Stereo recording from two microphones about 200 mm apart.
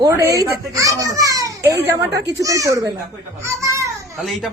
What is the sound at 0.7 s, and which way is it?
A child's voice, 15° right (ahead or behind).